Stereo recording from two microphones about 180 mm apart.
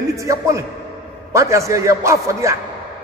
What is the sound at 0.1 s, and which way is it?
A man's voice, 15° right (ahead or behind).